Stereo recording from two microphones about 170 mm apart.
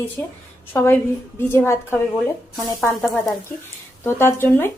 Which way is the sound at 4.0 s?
15° left (ahead or behind).